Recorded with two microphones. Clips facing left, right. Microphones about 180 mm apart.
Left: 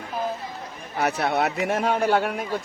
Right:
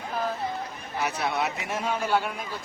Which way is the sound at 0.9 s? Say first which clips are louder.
Left 5 dB; 60° left (ahead or behind).